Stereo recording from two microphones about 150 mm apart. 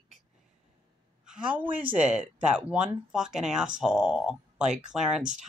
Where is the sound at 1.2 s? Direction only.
5° right (ahead or behind).